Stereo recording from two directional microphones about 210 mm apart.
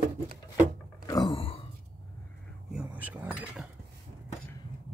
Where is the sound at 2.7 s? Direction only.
5° right (ahead or behind).